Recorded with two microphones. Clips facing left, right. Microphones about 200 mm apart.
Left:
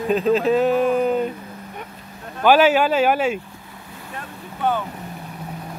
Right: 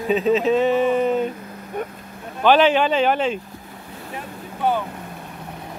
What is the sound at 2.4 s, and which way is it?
Speech, 10° left (ahead or behind).